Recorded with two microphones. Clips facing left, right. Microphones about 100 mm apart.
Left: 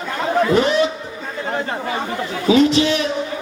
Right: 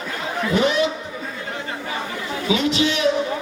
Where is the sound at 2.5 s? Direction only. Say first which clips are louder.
Left 6 dB; 40° left (ahead or behind).